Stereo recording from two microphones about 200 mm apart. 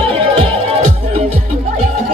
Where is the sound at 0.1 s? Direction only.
30° right (ahead or behind).